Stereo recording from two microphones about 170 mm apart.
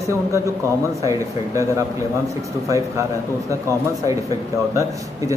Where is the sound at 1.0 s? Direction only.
20° right (ahead or behind).